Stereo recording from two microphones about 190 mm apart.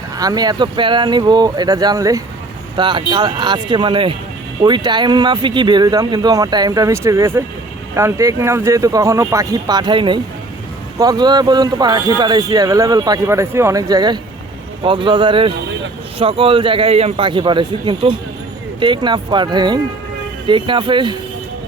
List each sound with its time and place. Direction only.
0.2 s speech: 20° right (ahead or behind)